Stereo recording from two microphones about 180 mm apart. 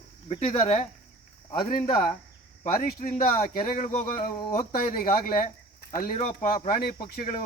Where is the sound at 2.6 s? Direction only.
50° left (ahead or behind).